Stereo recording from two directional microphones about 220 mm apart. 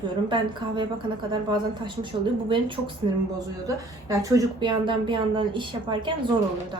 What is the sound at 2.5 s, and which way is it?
Speech, 20° right (ahead or behind).